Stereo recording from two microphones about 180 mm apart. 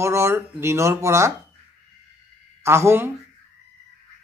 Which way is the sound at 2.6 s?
15° right (ahead or behind).